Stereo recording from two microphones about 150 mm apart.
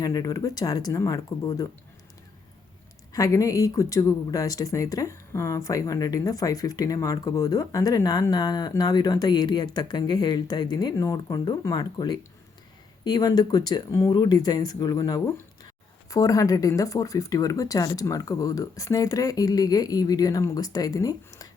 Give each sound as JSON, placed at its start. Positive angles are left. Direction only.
{"t": 0.0, "sound": "speech", "side_deg": 25}
{"t": 3.1, "sound": "speech", "side_deg": 20}